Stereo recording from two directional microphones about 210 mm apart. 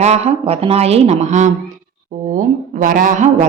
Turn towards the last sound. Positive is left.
turn(degrees=-35)  # may be behind; listen again after turning